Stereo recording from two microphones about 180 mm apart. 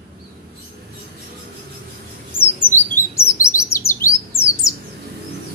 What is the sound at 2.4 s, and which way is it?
Chirp, 10° left (ahead or behind).